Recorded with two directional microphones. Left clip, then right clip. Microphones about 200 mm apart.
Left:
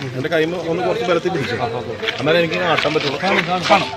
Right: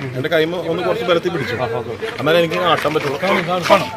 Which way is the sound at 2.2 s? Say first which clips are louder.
Right 2 dB; 10° left (ahead or behind).